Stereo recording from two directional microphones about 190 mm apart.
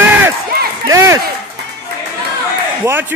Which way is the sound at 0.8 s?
15° right (ahead or behind).